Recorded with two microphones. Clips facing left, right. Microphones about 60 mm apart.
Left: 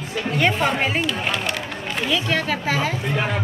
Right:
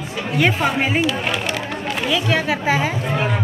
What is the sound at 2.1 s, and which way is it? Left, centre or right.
Speech, centre.